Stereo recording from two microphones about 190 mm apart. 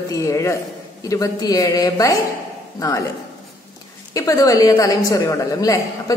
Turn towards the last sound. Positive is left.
turn(degrees=20)  # may be behind; listen again after turning